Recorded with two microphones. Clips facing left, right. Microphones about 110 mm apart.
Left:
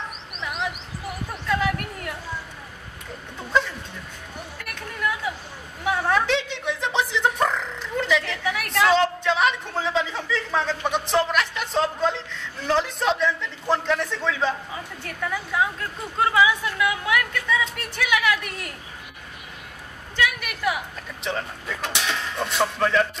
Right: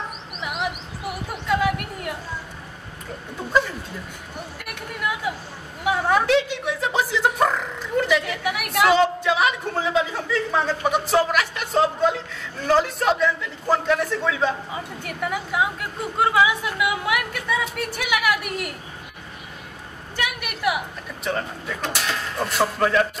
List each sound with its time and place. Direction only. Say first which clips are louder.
0.4 s bird: right 1 dB; 10° right (ahead or behind)
1.5 s a sound: right 2 dB; 10° right (ahead or behind)
5.9 s speech: right 2 dB; 10° right (ahead or behind)
20.2 s speech: left 3 dB; 10° right (ahead or behind)